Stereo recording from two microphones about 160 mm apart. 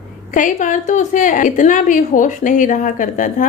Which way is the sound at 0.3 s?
50° left (ahead or behind).